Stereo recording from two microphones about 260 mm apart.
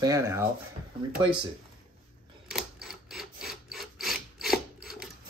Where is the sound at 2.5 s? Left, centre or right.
Centre.